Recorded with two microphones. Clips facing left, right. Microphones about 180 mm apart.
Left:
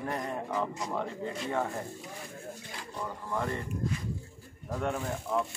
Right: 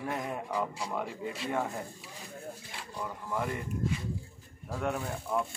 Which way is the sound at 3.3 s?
10° right (ahead or behind).